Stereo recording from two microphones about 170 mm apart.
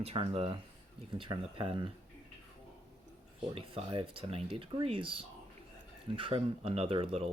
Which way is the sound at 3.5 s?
35° right (ahead or behind).